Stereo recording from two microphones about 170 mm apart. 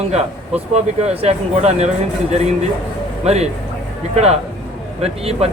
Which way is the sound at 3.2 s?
40° right (ahead or behind).